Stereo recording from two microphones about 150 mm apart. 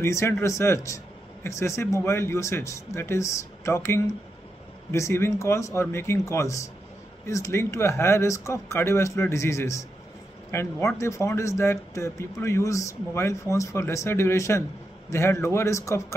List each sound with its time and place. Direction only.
0.0 s speech: 20° left (ahead or behind)